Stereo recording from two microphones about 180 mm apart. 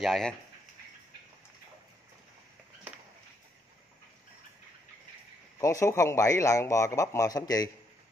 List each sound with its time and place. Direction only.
0.0 s speech: centre (ahead or behind)
5.6 s a man's voice: 15° left (ahead or behind)